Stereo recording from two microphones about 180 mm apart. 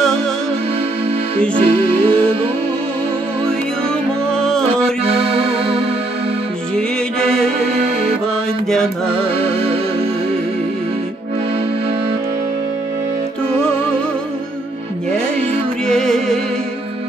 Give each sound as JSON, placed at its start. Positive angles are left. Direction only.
{"t": 1.5, "sound": "music", "side_deg": -30}
{"t": 4.3, "sound": "music", "side_deg": 5}
{"t": 5.0, "sound": "music", "side_deg": -30}
{"t": 8.6, "sound": "music", "side_deg": 5}
{"t": 9.3, "sound": "music", "side_deg": -30}
{"t": 15.9, "sound": "music", "side_deg": 0}